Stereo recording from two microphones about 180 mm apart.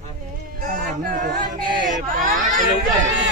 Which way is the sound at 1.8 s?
45° right (ahead or behind).